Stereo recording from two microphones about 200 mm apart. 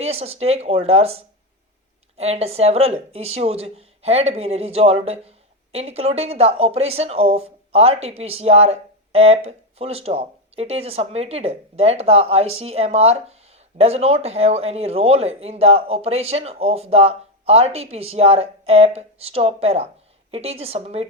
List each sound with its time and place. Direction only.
0.0 s speech: 30° right (ahead or behind)